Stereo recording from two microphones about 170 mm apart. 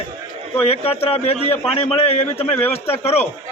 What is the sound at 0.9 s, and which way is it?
A man's voice, 35° left (ahead or behind).